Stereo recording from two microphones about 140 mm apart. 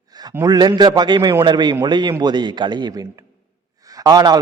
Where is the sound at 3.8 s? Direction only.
25° right (ahead or behind).